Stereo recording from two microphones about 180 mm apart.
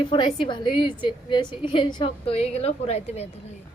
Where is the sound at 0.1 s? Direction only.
25° left (ahead or behind).